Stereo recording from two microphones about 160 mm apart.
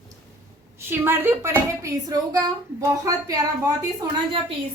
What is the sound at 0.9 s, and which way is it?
Speech, 15° right (ahead or behind).